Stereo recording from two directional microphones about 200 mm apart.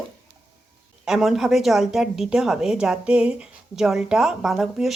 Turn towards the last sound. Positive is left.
turn(degrees=0)  # may be behind; listen again after turning